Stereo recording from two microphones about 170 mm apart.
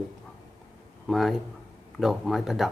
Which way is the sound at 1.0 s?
Centre (ahead or behind).